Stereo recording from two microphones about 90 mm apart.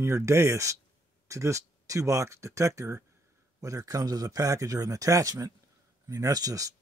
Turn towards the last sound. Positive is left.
turn(degrees=-40)  # may be behind; listen again after turning